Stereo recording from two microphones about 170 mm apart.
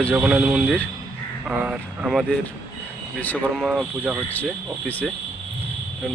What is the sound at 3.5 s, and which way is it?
Speech, 5° right (ahead or behind).